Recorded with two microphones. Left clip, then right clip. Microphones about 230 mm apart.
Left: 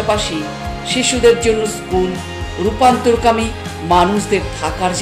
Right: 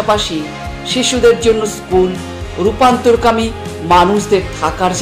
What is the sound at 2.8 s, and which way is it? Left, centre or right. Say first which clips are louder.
A woman's voice: right 2 dB; centre.